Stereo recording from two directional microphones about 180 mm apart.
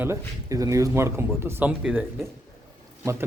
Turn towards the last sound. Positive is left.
turn(degrees=-15)  # may be behind; listen again after turning